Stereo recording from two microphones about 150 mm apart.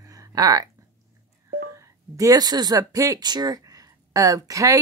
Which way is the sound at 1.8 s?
25° right (ahead or behind).